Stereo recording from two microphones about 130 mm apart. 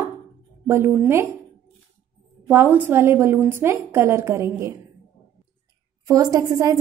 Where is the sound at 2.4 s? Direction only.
15° right (ahead or behind).